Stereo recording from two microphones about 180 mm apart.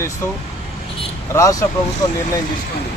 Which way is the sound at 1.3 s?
20° left (ahead or behind).